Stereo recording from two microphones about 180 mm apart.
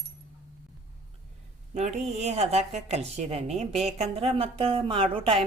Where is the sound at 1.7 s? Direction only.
40° right (ahead or behind).